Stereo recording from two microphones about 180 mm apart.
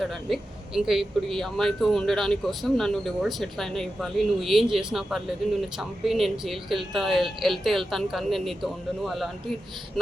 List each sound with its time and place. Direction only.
0.0 s speech: centre (ahead or behind)